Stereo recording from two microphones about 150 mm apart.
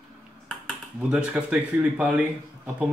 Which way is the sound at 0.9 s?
5° right (ahead or behind).